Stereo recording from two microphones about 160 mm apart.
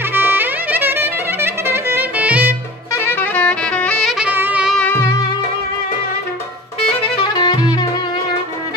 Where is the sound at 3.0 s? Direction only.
10° left (ahead or behind); by 4.7 s 10° right (ahead or behind).